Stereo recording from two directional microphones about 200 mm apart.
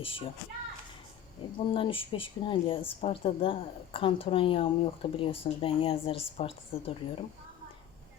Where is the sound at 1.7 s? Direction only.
25° left (ahead or behind).